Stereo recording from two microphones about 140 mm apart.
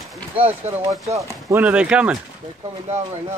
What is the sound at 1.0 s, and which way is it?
Speech, 25° right (ahead or behind).